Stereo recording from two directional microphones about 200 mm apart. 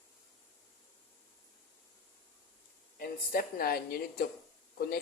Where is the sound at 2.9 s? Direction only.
45° left (ahead or behind).